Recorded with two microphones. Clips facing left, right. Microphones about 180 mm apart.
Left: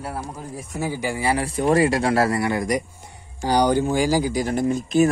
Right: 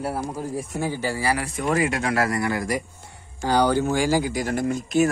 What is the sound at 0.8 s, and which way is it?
Speech, 10° left (ahead or behind).